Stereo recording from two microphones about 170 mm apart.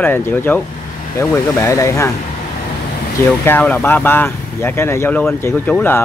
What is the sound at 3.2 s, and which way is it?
Speech, 10° left (ahead or behind).